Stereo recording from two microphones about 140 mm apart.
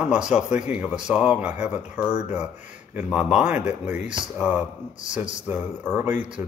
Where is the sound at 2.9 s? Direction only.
10° right (ahead or behind).